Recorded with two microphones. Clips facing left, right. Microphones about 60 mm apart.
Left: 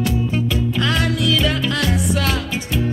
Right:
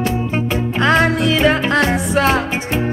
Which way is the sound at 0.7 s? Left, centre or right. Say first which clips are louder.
Right 9 dB; right.